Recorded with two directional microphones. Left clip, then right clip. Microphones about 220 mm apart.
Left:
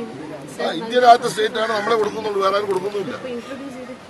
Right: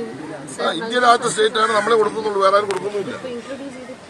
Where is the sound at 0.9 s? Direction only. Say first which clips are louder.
Left 3 dB; centre (ahead or behind).